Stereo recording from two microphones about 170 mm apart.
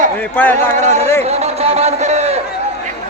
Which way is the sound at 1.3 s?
40° right (ahead or behind).